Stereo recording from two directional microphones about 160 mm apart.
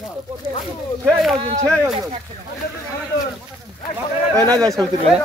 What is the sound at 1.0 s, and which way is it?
Speech, centre (ahead or behind).